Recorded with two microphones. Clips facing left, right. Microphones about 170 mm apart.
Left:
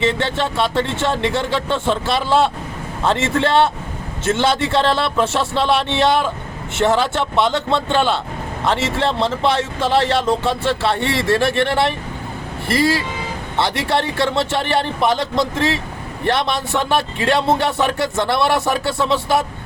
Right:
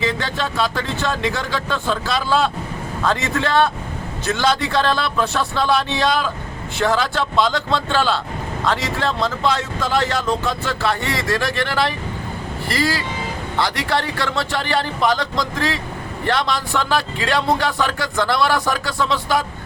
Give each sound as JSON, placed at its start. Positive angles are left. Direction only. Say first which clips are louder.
{"t": 0.0, "sound": "speech", "louder": "left 4 dB", "side_deg": 25}